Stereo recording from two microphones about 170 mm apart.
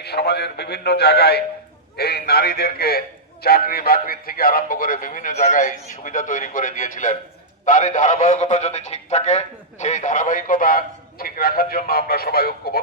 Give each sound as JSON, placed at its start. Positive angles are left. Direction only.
{"t": 0.0, "sound": "a man's voice", "side_deg": 70}